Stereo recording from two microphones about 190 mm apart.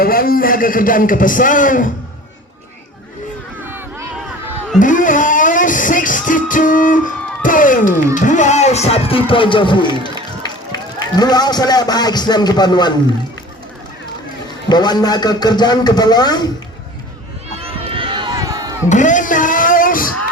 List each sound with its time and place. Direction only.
0.0 s a man's voice: 50° left (ahead or behind)
4.8 s music: 45° left (ahead or behind); by 12.9 s 20° left (ahead or behind)
14.7 s a man's voice: 20° left (ahead or behind)
17.6 s run: 30° right (ahead or behind)
18.9 s a sound: 40° left (ahead or behind)